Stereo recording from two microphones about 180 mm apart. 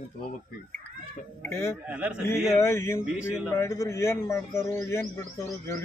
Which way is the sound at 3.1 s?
5° right (ahead or behind).